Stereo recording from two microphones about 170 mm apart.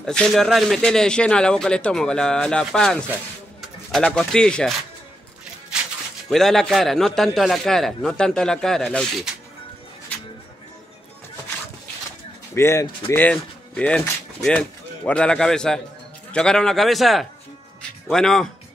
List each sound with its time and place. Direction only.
0.0 s a man's voice: 5° left (ahead or behind)
6.3 s a man's voice: centre (ahead or behind)
12.5 s a man's voice: 15° left (ahead or behind)